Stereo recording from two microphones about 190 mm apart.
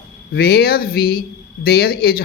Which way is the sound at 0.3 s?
55° left (ahead or behind).